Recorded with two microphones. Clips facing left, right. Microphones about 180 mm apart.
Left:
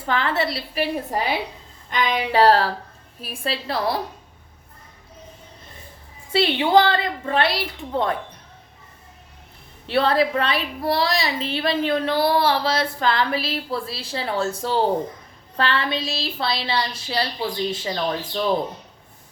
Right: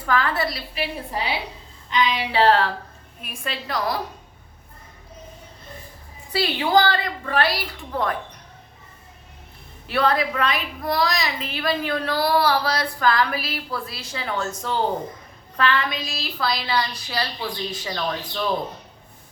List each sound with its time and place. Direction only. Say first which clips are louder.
0.0 s a woman's voice: even; 25° left (ahead or behind)
0.7 s a sound: left 5 dB; 45° left (ahead or behind)
3.2 s a woman's voice: left 4 dB; 30° left (ahead or behind)
6.3 s a woman's voice: left 3 dB; 25° left (ahead or behind)
9.8 s a woman's voice: left 2 dB; 30° left (ahead or behind)